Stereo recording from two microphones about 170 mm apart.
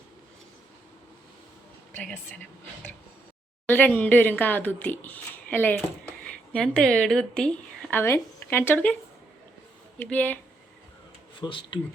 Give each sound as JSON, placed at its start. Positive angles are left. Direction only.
{"t": 2.0, "sound": "speech", "side_deg": 5}
{"t": 3.7, "sound": "speech", "side_deg": 10}
{"t": 10.0, "sound": "speech", "side_deg": 10}
{"t": 11.3, "sound": "speech", "side_deg": 30}